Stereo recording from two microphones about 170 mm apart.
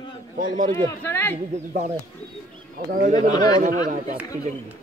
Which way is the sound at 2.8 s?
60° right (ahead or behind).